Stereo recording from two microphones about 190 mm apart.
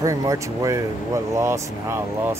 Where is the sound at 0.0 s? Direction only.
15° right (ahead or behind).